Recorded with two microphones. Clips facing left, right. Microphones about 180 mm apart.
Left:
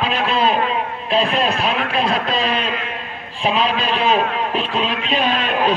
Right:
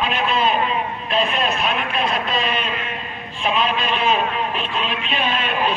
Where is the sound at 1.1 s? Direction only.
35° left (ahead or behind).